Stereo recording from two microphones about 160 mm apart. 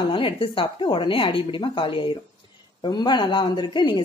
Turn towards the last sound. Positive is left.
turn(degrees=30)  # may be behind; listen again after turning